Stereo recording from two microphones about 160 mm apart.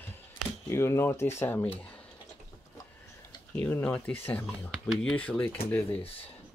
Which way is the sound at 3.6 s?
15° left (ahead or behind).